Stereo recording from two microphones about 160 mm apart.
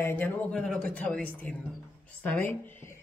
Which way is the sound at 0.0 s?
10° left (ahead or behind).